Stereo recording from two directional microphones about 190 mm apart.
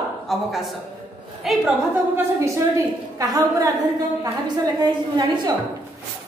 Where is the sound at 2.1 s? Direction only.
15° right (ahead or behind).